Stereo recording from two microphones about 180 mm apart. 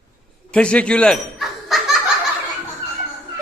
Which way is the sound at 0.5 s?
5° left (ahead or behind).